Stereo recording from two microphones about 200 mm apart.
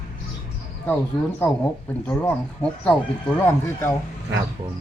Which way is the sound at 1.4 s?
10° left (ahead or behind).